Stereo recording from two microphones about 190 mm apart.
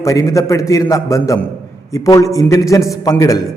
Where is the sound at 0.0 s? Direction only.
15° left (ahead or behind).